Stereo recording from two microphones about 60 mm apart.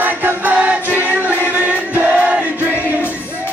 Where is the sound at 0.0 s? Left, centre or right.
Right.